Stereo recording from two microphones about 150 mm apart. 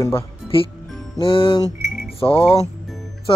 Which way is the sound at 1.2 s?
35° left (ahead or behind).